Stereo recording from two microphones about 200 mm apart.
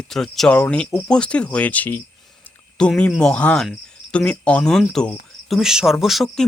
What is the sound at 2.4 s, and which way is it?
Cricket, 5° left (ahead or behind).